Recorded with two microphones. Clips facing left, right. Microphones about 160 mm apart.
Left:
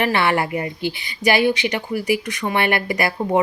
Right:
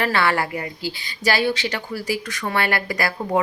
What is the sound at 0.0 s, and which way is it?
A woman's voice, 20° left (ahead or behind).